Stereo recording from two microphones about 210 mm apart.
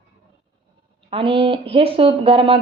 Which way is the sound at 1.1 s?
25° right (ahead or behind).